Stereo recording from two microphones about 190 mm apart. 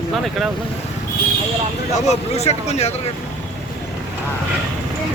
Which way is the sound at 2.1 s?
35° left (ahead or behind).